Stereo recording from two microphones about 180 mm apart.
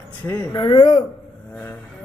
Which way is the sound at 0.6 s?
25° left (ahead or behind).